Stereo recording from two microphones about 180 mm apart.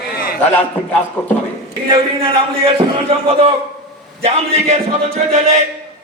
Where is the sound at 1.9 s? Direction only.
30° right (ahead or behind).